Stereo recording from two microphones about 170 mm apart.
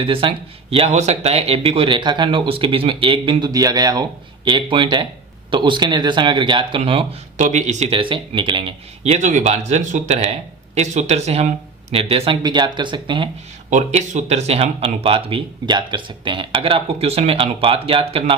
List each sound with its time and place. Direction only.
0.0 s speech: 30° right (ahead or behind)
7.3 s speech: 45° right (ahead or behind); by 8.6 s 30° right (ahead or behind)
9.0 s speech: 45° right (ahead or behind); by 13.3 s 30° right (ahead or behind)
13.7 s speech: 45° right (ahead or behind)